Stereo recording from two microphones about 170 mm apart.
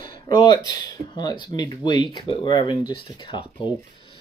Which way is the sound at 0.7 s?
25° left (ahead or behind).